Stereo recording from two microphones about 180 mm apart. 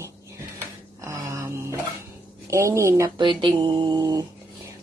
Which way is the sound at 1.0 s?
15° right (ahead or behind).